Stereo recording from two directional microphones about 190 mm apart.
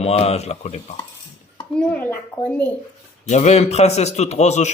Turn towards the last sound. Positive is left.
turn(degrees=35)  # may be behind; listen again after turning